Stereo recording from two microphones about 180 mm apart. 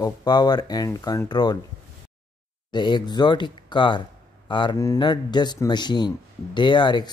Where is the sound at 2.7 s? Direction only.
25° left (ahead or behind).